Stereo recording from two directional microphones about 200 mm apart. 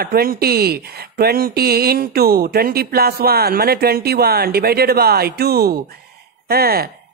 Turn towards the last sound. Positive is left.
turn(degrees=-50)  # may be behind; listen again after turning